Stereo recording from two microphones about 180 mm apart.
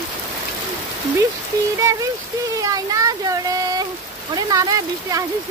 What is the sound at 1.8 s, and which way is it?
Speech, 15° right (ahead or behind).